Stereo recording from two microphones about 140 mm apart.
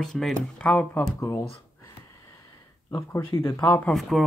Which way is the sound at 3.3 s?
25° left (ahead or behind).